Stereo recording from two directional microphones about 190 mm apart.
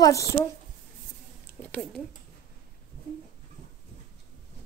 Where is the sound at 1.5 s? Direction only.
10° left (ahead or behind).